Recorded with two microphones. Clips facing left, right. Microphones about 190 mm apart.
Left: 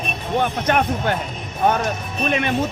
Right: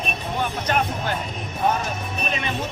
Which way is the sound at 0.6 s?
55° left (ahead or behind).